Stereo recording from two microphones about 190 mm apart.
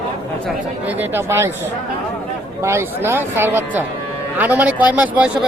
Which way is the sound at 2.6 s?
15° right (ahead or behind).